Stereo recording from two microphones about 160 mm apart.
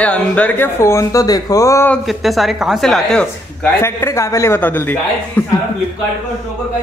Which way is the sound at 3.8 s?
15° left (ahead or behind).